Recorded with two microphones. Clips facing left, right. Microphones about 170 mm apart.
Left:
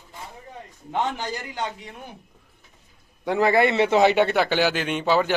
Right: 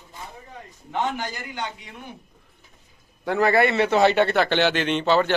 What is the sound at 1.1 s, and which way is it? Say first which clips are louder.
Speech: left 1 dB; 35° left (ahead or behind).